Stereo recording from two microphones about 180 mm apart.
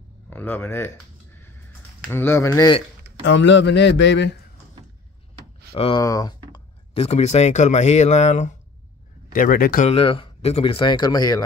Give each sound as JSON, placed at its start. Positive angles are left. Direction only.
{"t": 0.3, "sound": "speech", "side_deg": 10}
{"t": 2.0, "sound": "speech", "side_deg": 15}
{"t": 3.3, "sound": "a man's voice", "side_deg": 90}
{"t": 5.7, "sound": "speech", "side_deg": 30}
{"t": 5.9, "sound": "speech", "side_deg": 20}
{"t": 6.5, "sound": "speech", "side_deg": 30}
{"t": 9.3, "sound": "speech", "side_deg": 50}
{"t": 9.8, "sound": "speech", "side_deg": 30}